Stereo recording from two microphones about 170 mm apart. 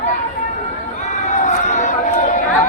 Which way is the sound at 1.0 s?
45° left (ahead or behind).